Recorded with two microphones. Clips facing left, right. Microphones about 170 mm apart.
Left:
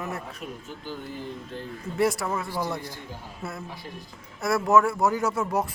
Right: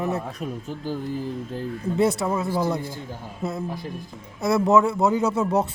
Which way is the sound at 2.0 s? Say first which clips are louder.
Right 3 dB; 20° right (ahead or behind).